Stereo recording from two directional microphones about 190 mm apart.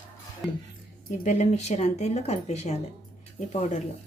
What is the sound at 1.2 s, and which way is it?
Speech, 40° left (ahead or behind).